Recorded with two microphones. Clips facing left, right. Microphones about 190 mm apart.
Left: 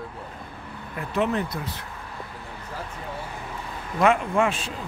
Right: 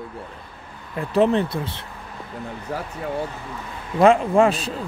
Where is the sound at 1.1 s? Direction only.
30° right (ahead or behind).